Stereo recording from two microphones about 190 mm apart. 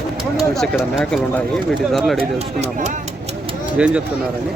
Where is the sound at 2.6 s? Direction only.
35° right (ahead or behind).